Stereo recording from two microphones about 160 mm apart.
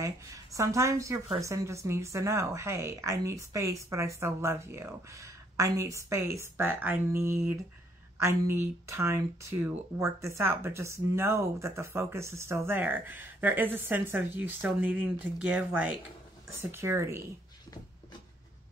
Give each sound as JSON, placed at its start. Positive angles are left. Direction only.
{"t": 0.0, "sound": "speech", "side_deg": -20}